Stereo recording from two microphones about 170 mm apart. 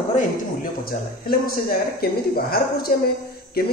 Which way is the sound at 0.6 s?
60° left (ahead or behind).